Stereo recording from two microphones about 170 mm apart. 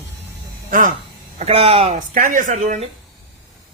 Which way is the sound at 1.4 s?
35° right (ahead or behind).